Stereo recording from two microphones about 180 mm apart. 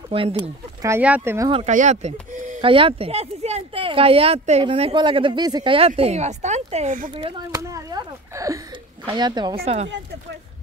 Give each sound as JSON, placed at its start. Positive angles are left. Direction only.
{"t": 0.1, "sound": "speech", "side_deg": -30}
{"t": 0.8, "sound": "speech", "side_deg": -10}
{"t": 1.5, "sound": "speech", "side_deg": -40}
{"t": 2.6, "sound": "speech", "side_deg": -30}
{"t": 7.2, "sound": "a sound", "side_deg": -25}
{"t": 9.0, "sound": "speech", "side_deg": -25}